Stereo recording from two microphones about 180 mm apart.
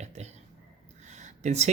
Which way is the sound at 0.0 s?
40° right (ahead or behind).